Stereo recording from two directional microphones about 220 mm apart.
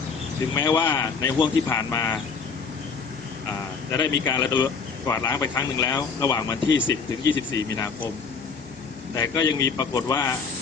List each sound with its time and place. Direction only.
0.5 s speech: 20° left (ahead or behind)
4.3 s speech: 15° left (ahead or behind)
6.7 s speech: 60° left (ahead or behind)
7.3 s speech: 15° left (ahead or behind)
9.1 s speech: 15° left (ahead or behind)